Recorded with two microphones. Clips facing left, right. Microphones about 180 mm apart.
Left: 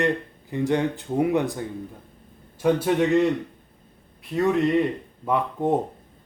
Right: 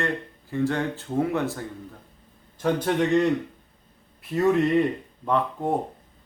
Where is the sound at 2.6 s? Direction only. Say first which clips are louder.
Left 3 dB; 5° left (ahead or behind).